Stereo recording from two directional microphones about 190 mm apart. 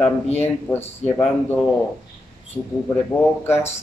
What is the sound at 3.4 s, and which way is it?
Speech, 15° left (ahead or behind).